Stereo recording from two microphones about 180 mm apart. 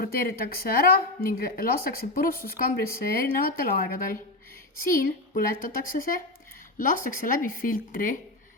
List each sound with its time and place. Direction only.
0.0 s a woman's voice: 55° left (ahead or behind)